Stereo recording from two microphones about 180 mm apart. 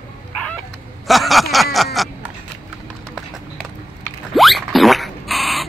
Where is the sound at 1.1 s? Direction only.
Centre (ahead or behind).